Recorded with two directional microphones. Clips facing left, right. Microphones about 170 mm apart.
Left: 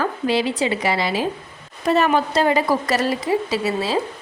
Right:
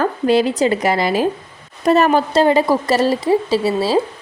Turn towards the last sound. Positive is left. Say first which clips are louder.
# right 5 dB
turn(degrees=-30)  # may be behind; listen again after turning